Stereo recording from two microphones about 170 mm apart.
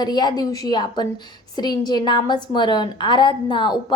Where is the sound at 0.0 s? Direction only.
25° left (ahead or behind).